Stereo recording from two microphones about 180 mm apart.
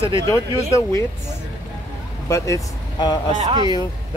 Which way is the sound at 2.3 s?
15° left (ahead or behind).